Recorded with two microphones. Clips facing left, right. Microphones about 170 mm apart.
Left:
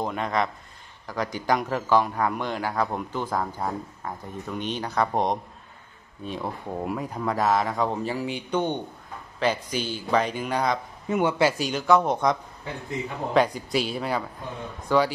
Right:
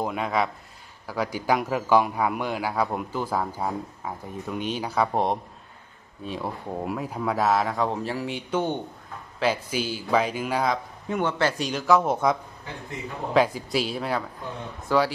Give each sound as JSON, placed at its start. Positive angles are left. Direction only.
{"t": 0.0, "sound": "a man's voice", "side_deg": -5}
{"t": 11.1, "sound": "speech", "side_deg": 10}